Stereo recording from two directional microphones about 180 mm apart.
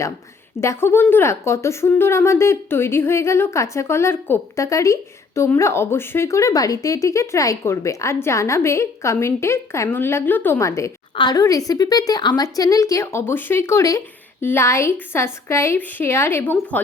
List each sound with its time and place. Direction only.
0.6 s a woman's voice: 15° left (ahead or behind)